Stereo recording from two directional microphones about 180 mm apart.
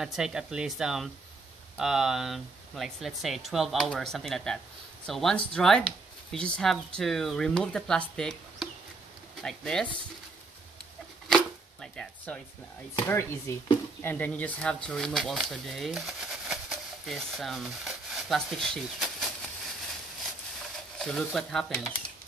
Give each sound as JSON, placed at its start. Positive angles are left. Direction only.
{"t": 0.0, "sound": "speech", "side_deg": -5}
{"t": 11.2, "sound": "chopping", "side_deg": 5}
{"t": 13.0, "sound": "speech", "side_deg": 15}
{"t": 21.0, "sound": "speech", "side_deg": 0}